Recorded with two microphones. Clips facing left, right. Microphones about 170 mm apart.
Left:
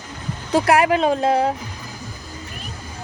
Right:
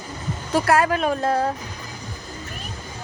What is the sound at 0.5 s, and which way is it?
Speech, 15° left (ahead or behind).